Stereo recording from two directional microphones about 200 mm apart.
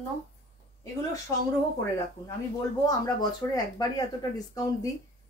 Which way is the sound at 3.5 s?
20° left (ahead or behind).